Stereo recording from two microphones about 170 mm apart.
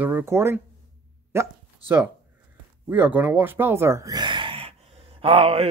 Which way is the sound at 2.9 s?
10° right (ahead or behind).